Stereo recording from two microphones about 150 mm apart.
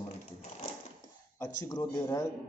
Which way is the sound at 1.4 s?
20° left (ahead or behind).